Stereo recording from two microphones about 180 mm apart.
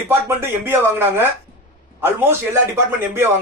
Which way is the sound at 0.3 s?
10° right (ahead or behind).